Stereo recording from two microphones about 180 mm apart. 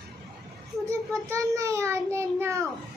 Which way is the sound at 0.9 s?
15° right (ahead or behind).